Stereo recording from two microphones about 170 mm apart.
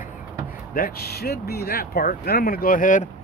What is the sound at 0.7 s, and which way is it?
Speech, 60° left (ahead or behind).